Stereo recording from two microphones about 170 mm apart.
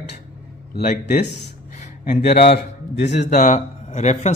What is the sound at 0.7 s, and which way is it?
Speech, 55° left (ahead or behind).